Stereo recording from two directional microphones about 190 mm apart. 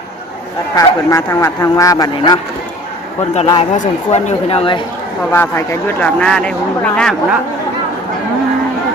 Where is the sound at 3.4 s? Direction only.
20° left (ahead or behind).